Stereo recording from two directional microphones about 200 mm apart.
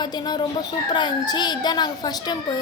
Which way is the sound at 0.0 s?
20° left (ahead or behind).